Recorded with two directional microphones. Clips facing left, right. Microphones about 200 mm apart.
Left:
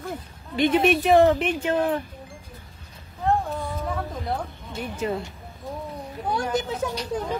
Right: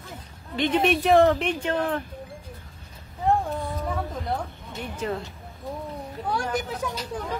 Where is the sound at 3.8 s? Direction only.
Centre (ahead or behind).